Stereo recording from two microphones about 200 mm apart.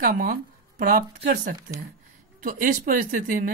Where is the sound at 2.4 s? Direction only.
45° right (ahead or behind).